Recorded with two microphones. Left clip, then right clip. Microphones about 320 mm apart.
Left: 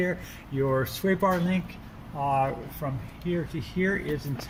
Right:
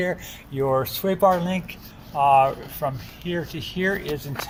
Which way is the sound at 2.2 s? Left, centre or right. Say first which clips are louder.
Right 10 dB; right.